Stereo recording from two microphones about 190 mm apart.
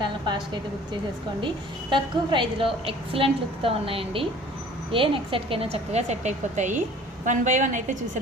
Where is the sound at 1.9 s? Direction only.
25° right (ahead or behind).